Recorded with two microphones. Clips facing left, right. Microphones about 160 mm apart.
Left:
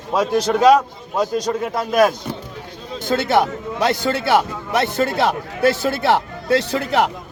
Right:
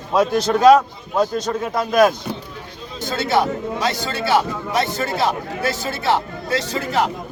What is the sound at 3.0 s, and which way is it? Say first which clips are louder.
A man's voice: left 2 dB; 55° left (ahead or behind).